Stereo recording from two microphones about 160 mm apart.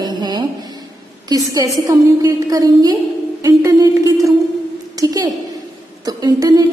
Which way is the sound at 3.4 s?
20° right (ahead or behind).